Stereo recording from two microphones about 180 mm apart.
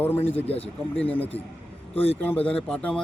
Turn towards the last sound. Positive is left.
turn(degrees=5)  # may be behind; listen again after turning